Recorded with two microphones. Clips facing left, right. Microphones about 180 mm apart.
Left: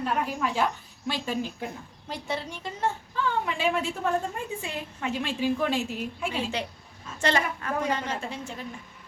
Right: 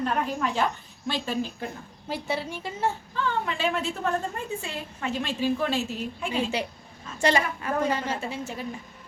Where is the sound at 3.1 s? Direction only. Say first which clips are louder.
Even; 10° left (ahead or behind).